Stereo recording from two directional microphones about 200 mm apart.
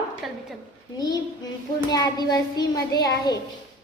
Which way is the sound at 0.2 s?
Centre (ahead or behind).